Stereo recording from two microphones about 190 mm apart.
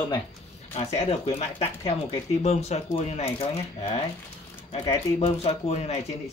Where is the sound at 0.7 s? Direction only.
30° left (ahead or behind).